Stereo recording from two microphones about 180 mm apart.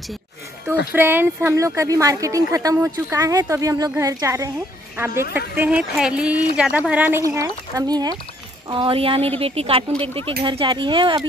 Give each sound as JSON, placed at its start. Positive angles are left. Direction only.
{"t": 0.9, "sound": "a woman's voice", "side_deg": -10}